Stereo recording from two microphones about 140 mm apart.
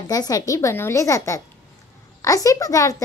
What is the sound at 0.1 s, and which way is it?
A woman's voice, 25° left (ahead or behind).